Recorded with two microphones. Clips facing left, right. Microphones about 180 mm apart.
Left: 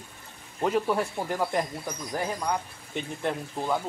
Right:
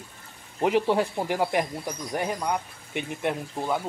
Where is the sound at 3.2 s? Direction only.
10° right (ahead or behind).